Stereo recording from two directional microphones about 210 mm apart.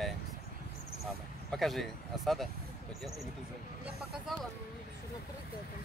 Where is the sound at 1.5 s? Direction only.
Centre (ahead or behind).